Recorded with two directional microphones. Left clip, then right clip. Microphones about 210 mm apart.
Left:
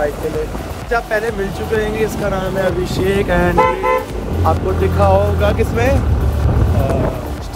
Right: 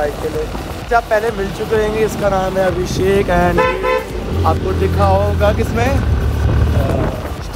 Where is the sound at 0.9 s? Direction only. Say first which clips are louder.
Right 3 dB; centre (ahead or behind).